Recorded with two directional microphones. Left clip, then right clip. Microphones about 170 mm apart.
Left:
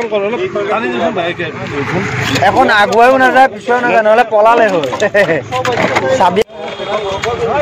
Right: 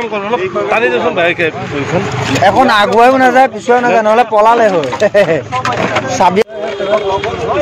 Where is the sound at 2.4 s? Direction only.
25° right (ahead or behind).